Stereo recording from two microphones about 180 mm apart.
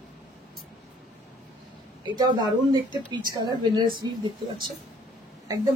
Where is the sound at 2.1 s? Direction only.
25° right (ahead or behind).